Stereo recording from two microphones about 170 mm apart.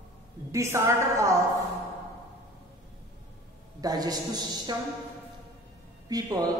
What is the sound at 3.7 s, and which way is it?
A woman's voice, 20° right (ahead or behind).